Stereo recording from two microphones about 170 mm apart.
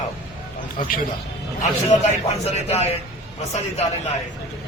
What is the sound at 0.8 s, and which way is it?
Speech, 55° left (ahead or behind).